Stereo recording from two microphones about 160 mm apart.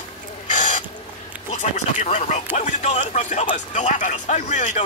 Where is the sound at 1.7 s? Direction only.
45° left (ahead or behind).